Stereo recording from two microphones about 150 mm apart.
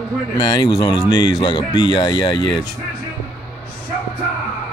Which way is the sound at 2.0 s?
35° left (ahead or behind).